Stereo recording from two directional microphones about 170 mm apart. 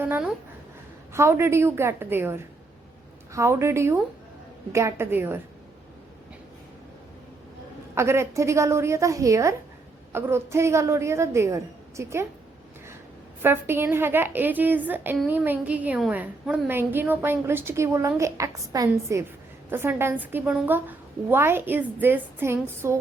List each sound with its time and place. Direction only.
0.0 s a woman's voice: 10° right (ahead or behind)
7.9 s a woman's voice: 15° right (ahead or behind)
13.4 s a woman's voice: 15° right (ahead or behind)